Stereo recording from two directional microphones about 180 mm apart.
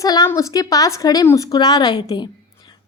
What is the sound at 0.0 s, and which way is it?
A woman's voice, 20° left (ahead or behind).